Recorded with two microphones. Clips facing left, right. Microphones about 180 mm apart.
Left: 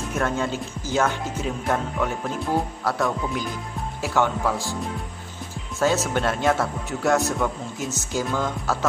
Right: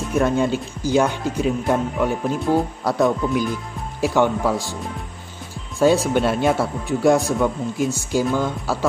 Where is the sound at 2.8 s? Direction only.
20° right (ahead or behind).